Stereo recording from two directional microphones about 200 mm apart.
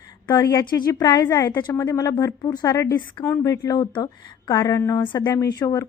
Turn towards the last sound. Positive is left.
turn(degrees=20)  # may be behind; listen again after turning